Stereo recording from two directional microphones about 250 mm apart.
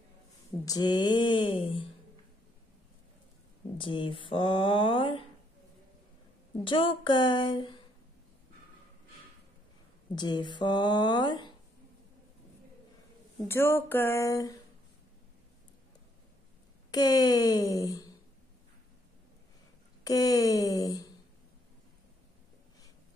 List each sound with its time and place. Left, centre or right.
0.5 s speech: centre
3.7 s speech: centre
6.6 s speech: centre
10.1 s speech: centre
13.5 s speech: centre
16.9 s speech: centre
20.0 s speech: centre